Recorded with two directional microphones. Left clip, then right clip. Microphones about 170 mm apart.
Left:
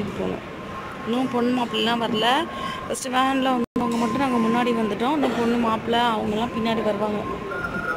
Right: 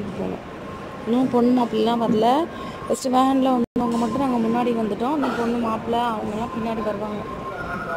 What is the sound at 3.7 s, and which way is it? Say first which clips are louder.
Music: right 1 dB; centre (ahead or behind).